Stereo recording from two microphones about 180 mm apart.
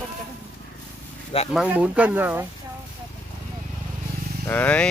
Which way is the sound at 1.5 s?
5° right (ahead or behind).